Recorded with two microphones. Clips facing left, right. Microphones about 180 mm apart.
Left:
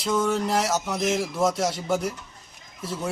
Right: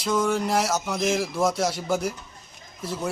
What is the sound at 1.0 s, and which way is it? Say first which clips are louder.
Music: right 1 dB; 25° left (ahead or behind).